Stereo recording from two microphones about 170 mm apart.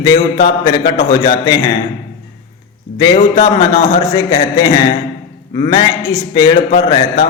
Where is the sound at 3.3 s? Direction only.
25° left (ahead or behind).